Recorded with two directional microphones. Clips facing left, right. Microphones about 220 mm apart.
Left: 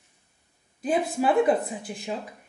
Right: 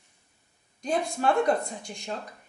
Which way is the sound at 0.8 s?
5° left (ahead or behind).